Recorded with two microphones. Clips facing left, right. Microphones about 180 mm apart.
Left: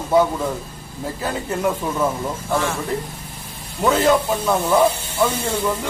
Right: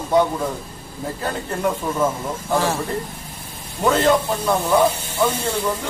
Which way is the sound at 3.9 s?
5° left (ahead or behind).